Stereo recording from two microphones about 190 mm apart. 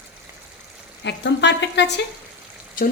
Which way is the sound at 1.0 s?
65° left (ahead or behind).